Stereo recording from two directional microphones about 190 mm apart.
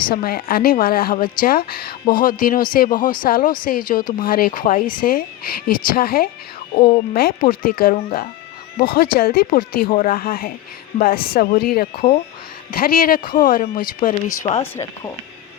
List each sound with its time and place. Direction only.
0.1 s a woman's voice: 55° left (ahead or behind)
6.7 s speech: 35° left (ahead or behind)
7.1 s a woman's voice: 50° left (ahead or behind)
14.6 s speech: 15° left (ahead or behind)